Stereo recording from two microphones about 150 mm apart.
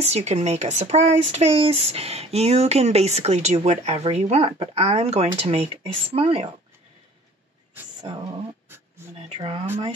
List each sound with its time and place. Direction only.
0.0 s speech: 45° right (ahead or behind)
9.3 s speech: 35° right (ahead or behind)